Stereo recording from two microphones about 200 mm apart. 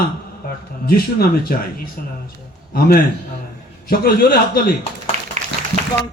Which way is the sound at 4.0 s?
50° left (ahead or behind).